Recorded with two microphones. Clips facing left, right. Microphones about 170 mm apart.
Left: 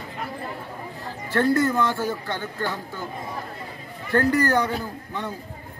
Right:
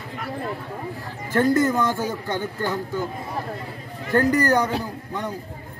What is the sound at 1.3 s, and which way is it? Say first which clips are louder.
Speech: right 2 dB; 20° right (ahead or behind).